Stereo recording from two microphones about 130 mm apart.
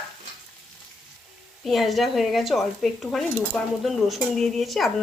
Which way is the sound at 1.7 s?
Centre (ahead or behind).